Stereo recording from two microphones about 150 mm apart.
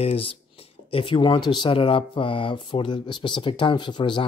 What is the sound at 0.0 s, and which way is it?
Speech, 40° left (ahead or behind).